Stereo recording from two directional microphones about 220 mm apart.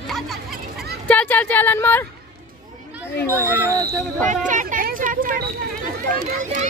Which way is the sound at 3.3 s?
10° right (ahead or behind).